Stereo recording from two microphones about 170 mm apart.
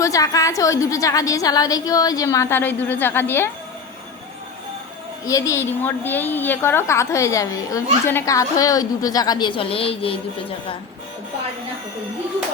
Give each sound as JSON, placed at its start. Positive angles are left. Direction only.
{"t": 0.0, "sound": "a woman's voice", "side_deg": 20}
{"t": 5.2, "sound": "a woman's voice", "side_deg": 20}